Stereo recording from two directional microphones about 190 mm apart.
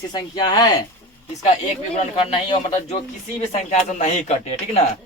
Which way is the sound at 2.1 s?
25° left (ahead or behind).